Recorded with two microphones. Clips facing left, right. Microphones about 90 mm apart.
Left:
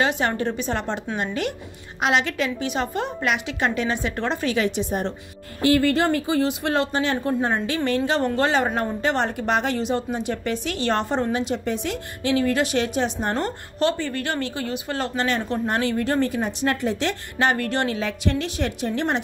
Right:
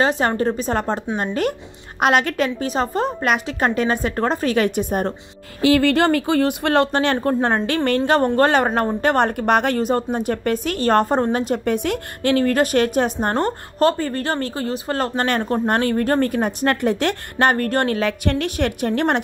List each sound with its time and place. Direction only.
0.0 s a woman's voice: 35° right (ahead or behind)
5.7 s a woman's voice: 85° right; by 19.2 s 60° right (ahead or behind)